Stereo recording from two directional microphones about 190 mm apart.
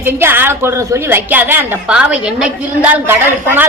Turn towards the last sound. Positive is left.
turn(degrees=-10)  # may be behind; listen again after turning